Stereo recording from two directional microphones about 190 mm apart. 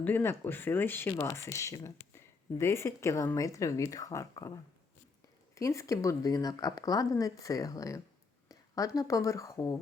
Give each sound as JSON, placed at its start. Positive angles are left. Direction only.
{"t": 0.0, "sound": "speech", "side_deg": 10}
{"t": 5.5, "sound": "speech", "side_deg": 15}